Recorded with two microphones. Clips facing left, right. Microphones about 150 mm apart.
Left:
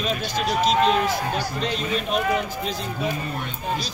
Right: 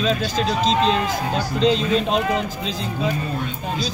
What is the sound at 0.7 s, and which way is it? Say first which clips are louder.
Speech: even; 5° left (ahead or behind).